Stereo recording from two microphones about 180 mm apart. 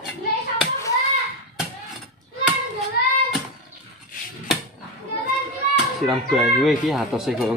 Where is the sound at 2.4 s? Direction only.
5° right (ahead or behind).